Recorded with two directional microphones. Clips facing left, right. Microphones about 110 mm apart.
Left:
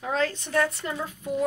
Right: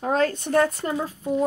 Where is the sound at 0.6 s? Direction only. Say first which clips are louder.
Right 3 dB; 40° right (ahead or behind).